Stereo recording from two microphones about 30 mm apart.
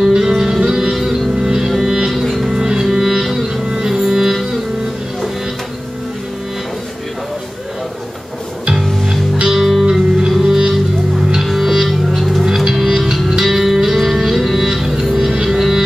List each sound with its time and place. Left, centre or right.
0.0 s music: centre
2.0 s music: centre
2.5 s music: centre
9.5 s music: centre
9.8 s music: centre
11.4 s music: centre